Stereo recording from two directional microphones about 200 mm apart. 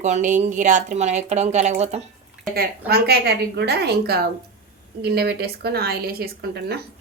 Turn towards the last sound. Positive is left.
turn(degrees=-50)  # may be behind; listen again after turning